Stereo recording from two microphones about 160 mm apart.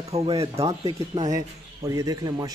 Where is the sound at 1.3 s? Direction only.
20° right (ahead or behind).